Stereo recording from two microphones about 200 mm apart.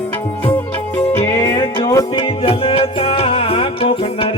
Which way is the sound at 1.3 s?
20° left (ahead or behind).